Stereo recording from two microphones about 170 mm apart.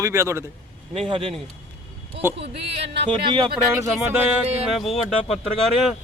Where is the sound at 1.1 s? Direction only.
35° right (ahead or behind).